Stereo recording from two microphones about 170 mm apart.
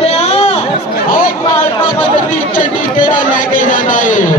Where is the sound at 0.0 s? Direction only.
40° left (ahead or behind).